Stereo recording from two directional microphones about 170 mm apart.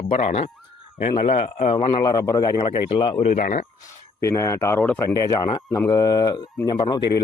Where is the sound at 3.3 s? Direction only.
55° left (ahead or behind).